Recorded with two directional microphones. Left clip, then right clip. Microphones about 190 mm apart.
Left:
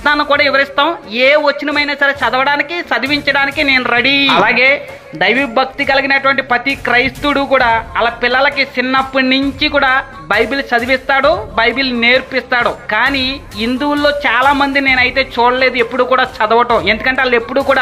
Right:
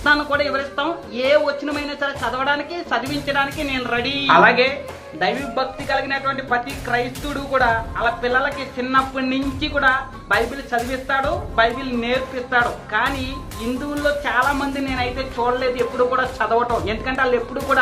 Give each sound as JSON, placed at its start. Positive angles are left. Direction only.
{"t": 0.0, "sound": "speech", "side_deg": 15}